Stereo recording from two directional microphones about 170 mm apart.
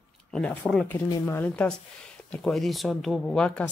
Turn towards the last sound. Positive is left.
turn(degrees=5)  # may be behind; listen again after turning